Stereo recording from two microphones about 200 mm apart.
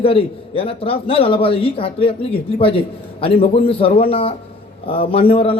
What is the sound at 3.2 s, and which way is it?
A man's voice, 30° left (ahead or behind).